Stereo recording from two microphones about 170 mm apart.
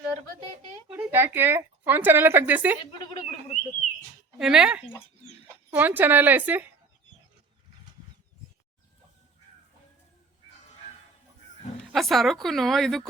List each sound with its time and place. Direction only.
0.9 s a woman's voice: 10° right (ahead or behind)
3.1 s a sound: 35° left (ahead or behind)
4.4 s a woman's voice: 5° right (ahead or behind)
11.9 s a woman's voice: centre (ahead or behind)